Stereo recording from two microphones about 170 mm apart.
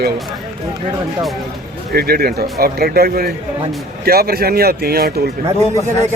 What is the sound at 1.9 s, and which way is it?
Speech, 65° right (ahead or behind).